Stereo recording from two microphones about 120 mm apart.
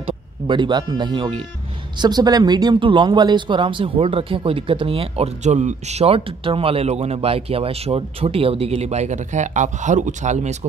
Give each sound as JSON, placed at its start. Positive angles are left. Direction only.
{"t": 0.5, "sound": "speech", "side_deg": -40}